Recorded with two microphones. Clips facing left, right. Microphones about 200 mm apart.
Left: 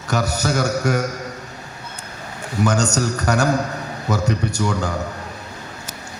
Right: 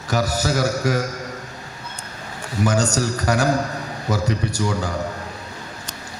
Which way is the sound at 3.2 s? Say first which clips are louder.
Even; 60° left (ahead or behind).